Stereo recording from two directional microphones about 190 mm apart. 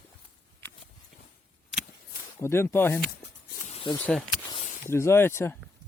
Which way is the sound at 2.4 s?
10° left (ahead or behind).